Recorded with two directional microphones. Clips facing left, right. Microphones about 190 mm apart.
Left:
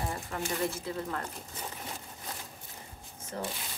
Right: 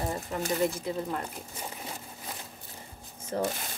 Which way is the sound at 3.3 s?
40° right (ahead or behind).